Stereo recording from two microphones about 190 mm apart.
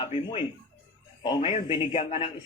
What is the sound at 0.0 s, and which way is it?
A man's voice, 25° left (ahead or behind).